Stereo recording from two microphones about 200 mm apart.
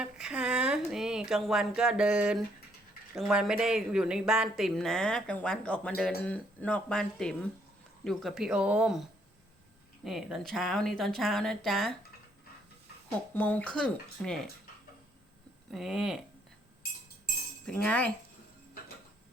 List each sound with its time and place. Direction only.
0.0 s a sound: 5° right (ahead or behind)
3.2 s speech: centre (ahead or behind)
13.3 s speech: 10° left (ahead or behind)
15.7 s speech: centre (ahead or behind)
17.7 s speech: 5° left (ahead or behind)